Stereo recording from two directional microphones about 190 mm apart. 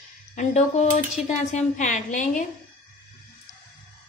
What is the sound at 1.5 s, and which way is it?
Speech, 40° left (ahead or behind).